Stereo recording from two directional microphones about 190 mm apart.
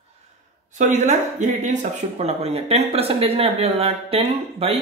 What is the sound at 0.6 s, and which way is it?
Speech, 40° right (ahead or behind).